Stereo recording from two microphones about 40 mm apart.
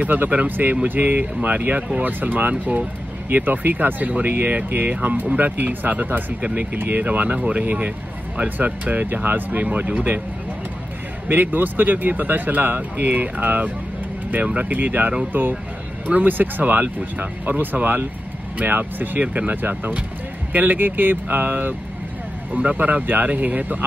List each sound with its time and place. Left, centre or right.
0.1 s speech: right
11.2 s speech: right
22.5 s speech: right